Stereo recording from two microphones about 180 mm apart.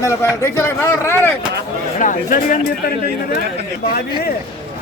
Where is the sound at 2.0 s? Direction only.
45° left (ahead or behind).